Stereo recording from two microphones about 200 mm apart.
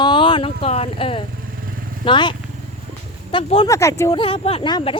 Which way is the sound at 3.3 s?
25° left (ahead or behind).